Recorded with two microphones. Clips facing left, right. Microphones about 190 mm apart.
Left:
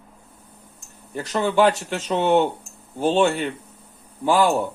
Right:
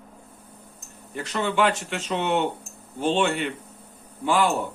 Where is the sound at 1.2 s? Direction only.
40° left (ahead or behind).